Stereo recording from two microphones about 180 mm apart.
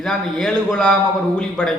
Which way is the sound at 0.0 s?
5° left (ahead or behind).